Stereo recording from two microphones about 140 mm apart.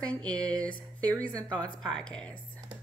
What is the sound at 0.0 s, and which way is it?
A woman's voice, 5° left (ahead or behind).